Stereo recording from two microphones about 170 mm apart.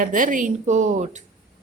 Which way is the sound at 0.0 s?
50° right (ahead or behind).